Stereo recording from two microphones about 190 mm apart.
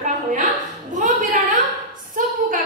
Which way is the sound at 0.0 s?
40° right (ahead or behind).